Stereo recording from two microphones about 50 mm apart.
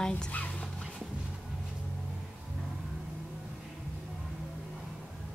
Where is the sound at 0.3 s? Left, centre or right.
Left.